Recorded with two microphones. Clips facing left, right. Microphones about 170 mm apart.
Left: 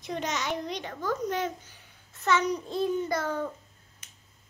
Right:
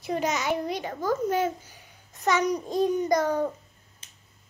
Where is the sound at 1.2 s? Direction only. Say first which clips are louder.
Right 5 dB; 10° right (ahead or behind).